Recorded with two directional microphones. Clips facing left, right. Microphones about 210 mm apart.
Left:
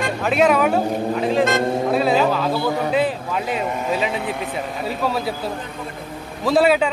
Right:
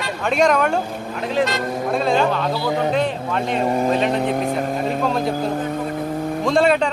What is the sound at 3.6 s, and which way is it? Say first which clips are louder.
Speech: right 4 dB; 35° right (ahead or behind).